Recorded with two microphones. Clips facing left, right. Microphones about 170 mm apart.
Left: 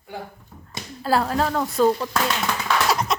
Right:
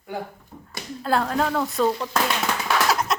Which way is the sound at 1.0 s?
5° left (ahead or behind).